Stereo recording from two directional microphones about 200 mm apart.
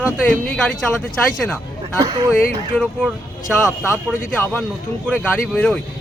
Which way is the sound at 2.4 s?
5° left (ahead or behind).